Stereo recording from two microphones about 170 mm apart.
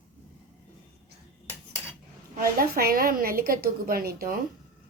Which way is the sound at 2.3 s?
60° right (ahead or behind).